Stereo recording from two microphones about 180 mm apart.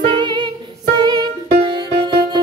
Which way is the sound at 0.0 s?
25° right (ahead or behind).